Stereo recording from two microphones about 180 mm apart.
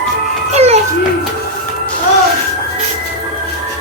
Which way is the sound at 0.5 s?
35° right (ahead or behind).